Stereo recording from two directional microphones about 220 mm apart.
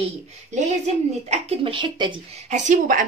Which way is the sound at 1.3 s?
25° right (ahead or behind).